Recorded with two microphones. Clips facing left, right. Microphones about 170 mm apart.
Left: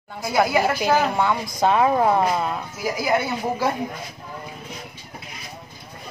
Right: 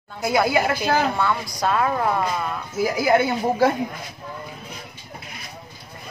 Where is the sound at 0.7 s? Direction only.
15° left (ahead or behind).